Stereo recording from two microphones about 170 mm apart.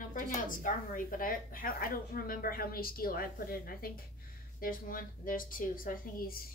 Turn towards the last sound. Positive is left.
turn(degrees=60)  # may be behind; listen again after turning